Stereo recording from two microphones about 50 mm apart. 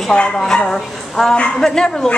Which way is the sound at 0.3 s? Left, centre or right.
Centre.